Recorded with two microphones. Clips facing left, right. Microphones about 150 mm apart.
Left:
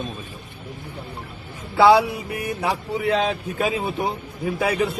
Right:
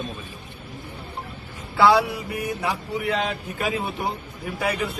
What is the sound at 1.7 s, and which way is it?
Speech, 25° left (ahead or behind).